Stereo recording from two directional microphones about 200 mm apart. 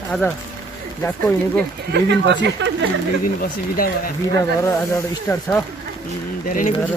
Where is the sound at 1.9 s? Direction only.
60° right (ahead or behind).